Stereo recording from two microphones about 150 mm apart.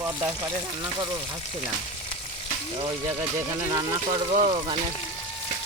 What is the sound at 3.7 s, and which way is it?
Speech, 30° right (ahead or behind).